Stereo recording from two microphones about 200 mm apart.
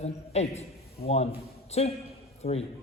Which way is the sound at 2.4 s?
30° left (ahead or behind).